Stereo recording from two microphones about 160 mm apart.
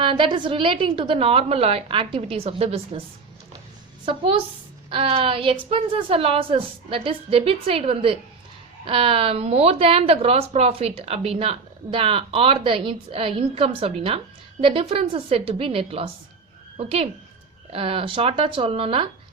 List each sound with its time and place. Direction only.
0.0 s a woman's voice: 30° right (ahead or behind)
4.1 s a woman's voice: 30° right (ahead or behind)